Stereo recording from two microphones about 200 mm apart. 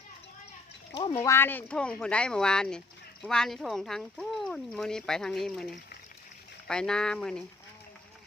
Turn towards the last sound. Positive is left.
turn(degrees=5)  # may be behind; listen again after turning